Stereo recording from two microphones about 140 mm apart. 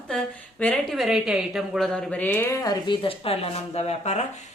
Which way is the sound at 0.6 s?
5° left (ahead or behind).